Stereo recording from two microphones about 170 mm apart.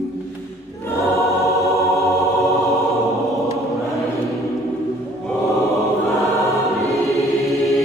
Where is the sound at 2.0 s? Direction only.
20° right (ahead or behind).